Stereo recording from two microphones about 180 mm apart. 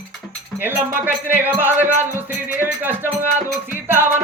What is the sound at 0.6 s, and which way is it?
Music, 10° right (ahead or behind).